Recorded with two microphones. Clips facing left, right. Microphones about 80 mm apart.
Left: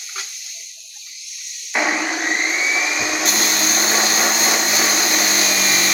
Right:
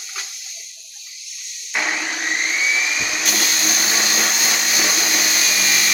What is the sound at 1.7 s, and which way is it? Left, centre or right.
Vacuum cleaner, centre.